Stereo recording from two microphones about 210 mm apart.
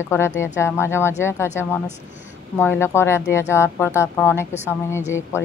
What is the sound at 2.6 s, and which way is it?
Speech, 10° left (ahead or behind).